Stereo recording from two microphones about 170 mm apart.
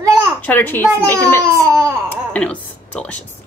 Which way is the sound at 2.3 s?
5° left (ahead or behind).